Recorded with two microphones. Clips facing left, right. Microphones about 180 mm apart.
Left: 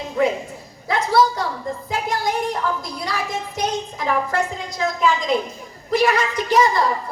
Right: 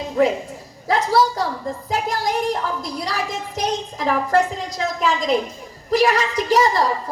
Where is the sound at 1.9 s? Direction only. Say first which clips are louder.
Right 1 dB; 35° right (ahead or behind).